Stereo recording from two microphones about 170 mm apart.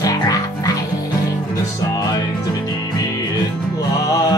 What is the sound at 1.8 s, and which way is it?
Music, 25° left (ahead or behind).